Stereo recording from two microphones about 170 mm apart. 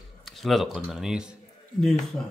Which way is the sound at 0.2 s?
Centre (ahead or behind).